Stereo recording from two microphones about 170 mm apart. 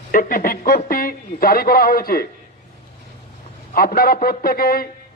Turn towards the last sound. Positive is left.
turn(degrees=60)  # may be behind; listen again after turning